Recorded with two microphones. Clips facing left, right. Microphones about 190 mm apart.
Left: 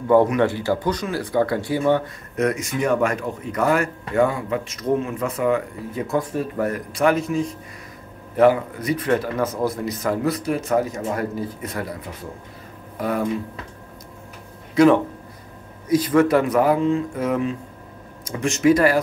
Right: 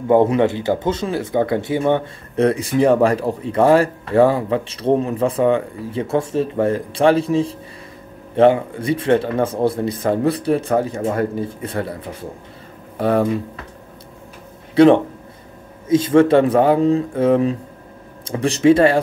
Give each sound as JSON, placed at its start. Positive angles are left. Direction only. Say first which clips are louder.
{"t": 0.1, "sound": "speech", "louder": "right 2 dB", "side_deg": -20}
{"t": 14.8, "sound": "speech", "louder": "right 4 dB", "side_deg": -30}